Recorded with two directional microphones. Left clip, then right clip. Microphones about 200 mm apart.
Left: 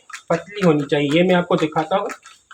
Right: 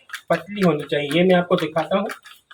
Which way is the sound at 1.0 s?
40° left (ahead or behind).